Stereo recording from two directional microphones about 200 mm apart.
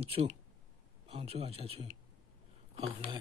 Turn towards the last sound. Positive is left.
turn(degrees=-25)  # may be behind; listen again after turning